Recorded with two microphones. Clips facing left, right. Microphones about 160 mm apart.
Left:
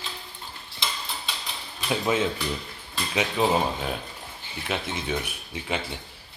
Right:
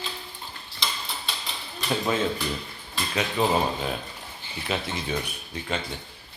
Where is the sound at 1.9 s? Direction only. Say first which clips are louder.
Left 1 dB; 10° left (ahead or behind).